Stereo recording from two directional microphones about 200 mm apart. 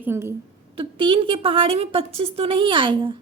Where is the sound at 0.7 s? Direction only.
25° right (ahead or behind).